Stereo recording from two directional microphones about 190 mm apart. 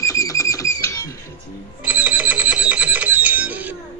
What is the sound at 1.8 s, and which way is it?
Alarm, 5° right (ahead or behind).